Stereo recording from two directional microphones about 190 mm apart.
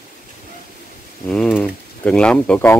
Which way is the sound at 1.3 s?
5° left (ahead or behind).